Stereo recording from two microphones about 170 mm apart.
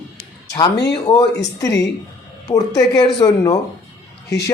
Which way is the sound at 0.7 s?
85° left.